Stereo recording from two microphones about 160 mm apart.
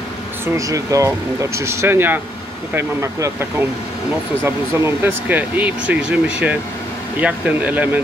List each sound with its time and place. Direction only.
0.6 s speech: 20° right (ahead or behind)
4.7 s speech: 15° right (ahead or behind)